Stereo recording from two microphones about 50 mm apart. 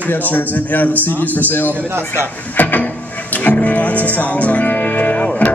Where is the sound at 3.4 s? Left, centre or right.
Left.